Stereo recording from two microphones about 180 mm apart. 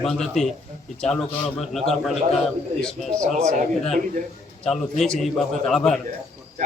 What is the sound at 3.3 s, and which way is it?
Speech, 40° right (ahead or behind).